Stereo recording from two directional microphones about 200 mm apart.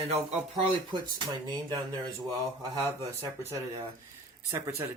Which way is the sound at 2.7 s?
20° right (ahead or behind).